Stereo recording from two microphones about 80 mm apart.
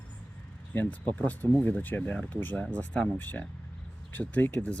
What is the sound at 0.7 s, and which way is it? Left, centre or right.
Speech, centre.